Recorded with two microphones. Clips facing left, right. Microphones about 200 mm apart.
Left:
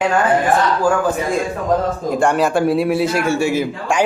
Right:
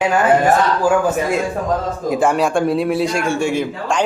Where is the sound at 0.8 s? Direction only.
5° right (ahead or behind).